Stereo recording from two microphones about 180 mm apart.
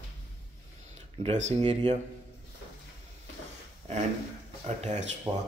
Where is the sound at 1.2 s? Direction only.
40° right (ahead or behind).